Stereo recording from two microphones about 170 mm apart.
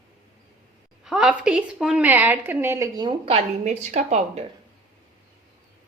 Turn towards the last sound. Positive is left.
turn(degrees=-40)  # may be behind; listen again after turning